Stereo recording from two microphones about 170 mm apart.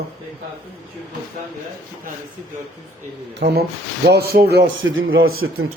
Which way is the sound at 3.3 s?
80° right.